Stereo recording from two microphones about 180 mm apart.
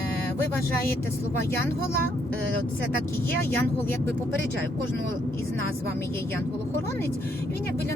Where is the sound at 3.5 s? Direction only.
10° left (ahead or behind).